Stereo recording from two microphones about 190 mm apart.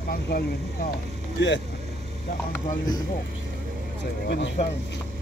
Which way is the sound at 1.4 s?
70° left (ahead or behind).